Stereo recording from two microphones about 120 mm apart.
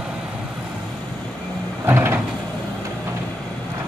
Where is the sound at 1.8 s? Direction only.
20° right (ahead or behind).